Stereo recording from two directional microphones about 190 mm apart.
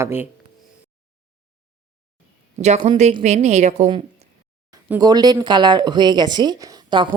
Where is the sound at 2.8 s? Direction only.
30° right (ahead or behind).